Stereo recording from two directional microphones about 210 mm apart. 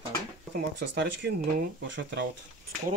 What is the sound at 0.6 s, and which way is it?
Speech, 55° right (ahead or behind).